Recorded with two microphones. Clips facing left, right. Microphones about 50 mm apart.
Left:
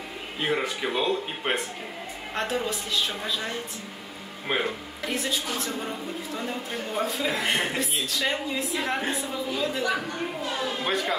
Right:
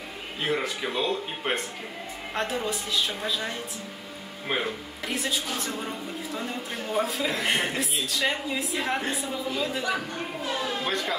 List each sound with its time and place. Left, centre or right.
0.4 s a woman's voice: centre